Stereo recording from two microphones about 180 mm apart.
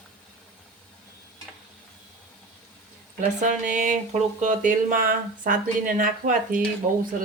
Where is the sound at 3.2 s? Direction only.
45° right (ahead or behind).